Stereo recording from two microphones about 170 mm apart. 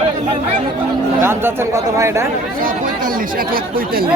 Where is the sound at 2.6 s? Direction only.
55° right (ahead or behind).